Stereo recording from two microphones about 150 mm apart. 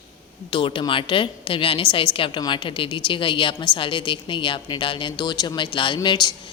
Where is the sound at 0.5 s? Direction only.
35° left (ahead or behind).